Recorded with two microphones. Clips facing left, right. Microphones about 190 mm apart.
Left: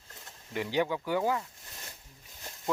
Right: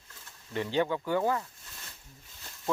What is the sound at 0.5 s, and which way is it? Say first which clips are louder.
Speech: right 1 dB; 15° left (ahead or behind).